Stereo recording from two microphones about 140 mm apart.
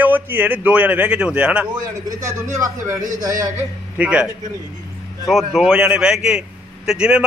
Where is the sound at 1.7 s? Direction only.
25° right (ahead or behind).